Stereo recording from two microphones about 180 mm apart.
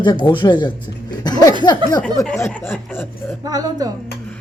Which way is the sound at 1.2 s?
20° left (ahead or behind).